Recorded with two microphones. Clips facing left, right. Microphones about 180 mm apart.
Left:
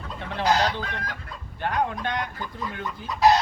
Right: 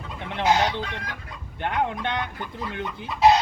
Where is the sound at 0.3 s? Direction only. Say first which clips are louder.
Right 1 dB; 20° right (ahead or behind).